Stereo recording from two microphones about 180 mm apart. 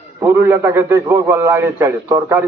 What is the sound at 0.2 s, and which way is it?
A man's voice, 15° right (ahead or behind).